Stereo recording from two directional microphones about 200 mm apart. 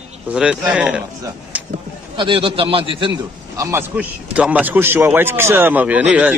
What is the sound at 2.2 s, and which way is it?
Speech, 25° right (ahead or behind).